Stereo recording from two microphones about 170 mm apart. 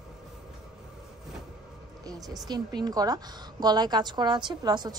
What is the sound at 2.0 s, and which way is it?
A woman's voice, 20° right (ahead or behind).